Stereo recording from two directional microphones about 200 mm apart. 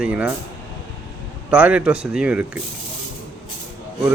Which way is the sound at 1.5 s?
5° right (ahead or behind).